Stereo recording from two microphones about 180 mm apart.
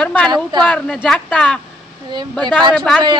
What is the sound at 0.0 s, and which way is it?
Speech, 5° left (ahead or behind).